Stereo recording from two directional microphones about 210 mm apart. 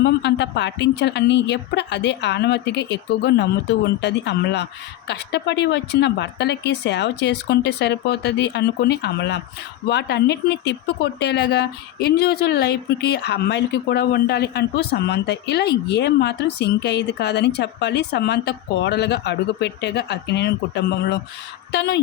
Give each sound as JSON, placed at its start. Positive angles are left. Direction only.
{"t": 0.0, "sound": "a woman's voice", "side_deg": 55}